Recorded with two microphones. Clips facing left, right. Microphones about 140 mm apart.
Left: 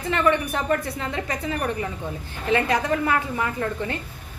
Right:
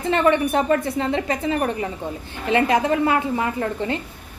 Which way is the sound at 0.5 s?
25° right (ahead or behind).